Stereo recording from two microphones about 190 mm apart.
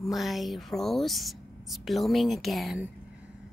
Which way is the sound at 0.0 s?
Centre (ahead or behind).